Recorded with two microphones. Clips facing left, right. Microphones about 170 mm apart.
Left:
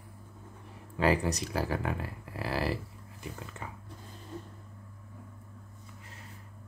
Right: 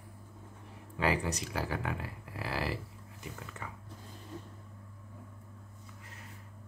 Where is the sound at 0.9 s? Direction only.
40° left (ahead or behind).